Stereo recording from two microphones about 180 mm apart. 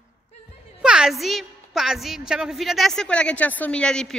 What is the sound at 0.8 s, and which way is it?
A woman's voice, 5° right (ahead or behind).